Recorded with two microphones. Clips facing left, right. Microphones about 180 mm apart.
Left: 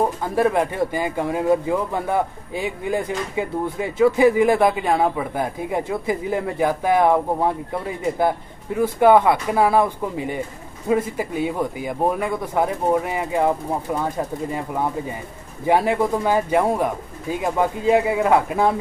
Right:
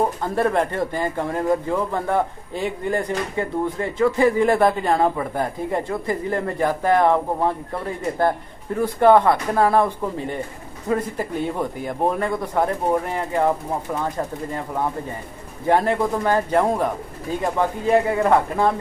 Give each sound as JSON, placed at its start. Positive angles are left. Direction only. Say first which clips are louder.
{"t": 0.2, "sound": "speech", "louder": "left 1 dB", "side_deg": 5}
{"t": 15.6, "sound": "speech", "louder": "left 1 dB", "side_deg": 10}